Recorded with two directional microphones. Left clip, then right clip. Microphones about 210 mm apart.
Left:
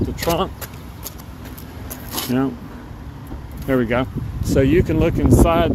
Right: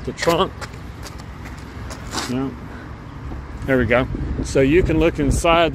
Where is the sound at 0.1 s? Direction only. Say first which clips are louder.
Right 5 dB; 5° left (ahead or behind).